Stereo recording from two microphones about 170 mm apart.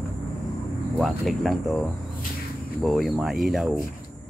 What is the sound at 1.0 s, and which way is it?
Speech, centre (ahead or behind).